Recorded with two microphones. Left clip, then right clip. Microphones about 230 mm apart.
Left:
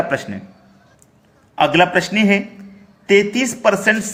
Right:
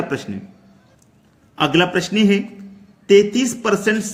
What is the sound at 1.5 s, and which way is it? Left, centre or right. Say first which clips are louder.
Speech: left 3 dB; centre.